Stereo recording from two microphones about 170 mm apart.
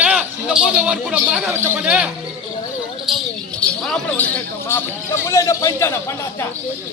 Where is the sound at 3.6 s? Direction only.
10° left (ahead or behind).